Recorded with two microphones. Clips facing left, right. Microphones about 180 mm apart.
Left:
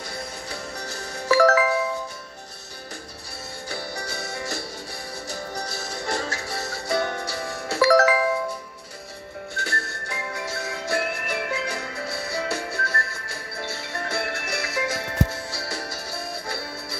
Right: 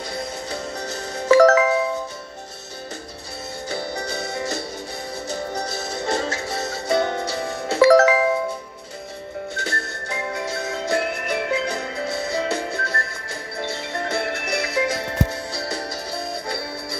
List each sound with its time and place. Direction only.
0.1 s music: 20° right (ahead or behind)
3.6 s music: 20° right (ahead or behind)
9.6 s music: 20° right (ahead or behind)